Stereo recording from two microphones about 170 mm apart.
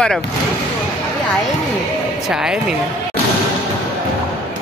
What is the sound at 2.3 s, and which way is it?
Speech, 5° right (ahead or behind).